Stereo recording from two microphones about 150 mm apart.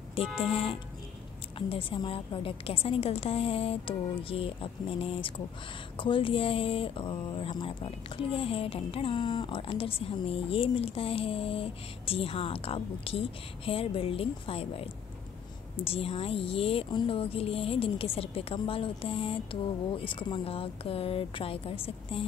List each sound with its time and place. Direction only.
0.2 s speech: 40° left (ahead or behind)